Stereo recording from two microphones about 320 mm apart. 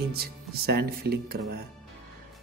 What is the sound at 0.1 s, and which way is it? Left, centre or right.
Speech, right.